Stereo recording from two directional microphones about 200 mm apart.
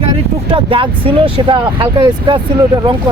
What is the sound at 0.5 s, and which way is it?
Speech, 25° right (ahead or behind).